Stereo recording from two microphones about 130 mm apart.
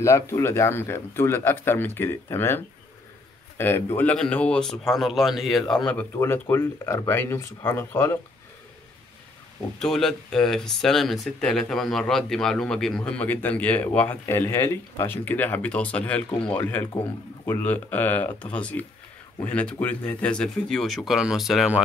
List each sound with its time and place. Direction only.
0.0 s speech: 20° left (ahead or behind)
6.1 s speech: 20° left (ahead or behind)
9.8 s speech: 5° left (ahead or behind)